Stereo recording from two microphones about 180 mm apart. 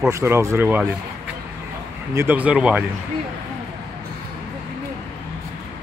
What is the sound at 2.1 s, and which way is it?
Speech, 10° right (ahead or behind).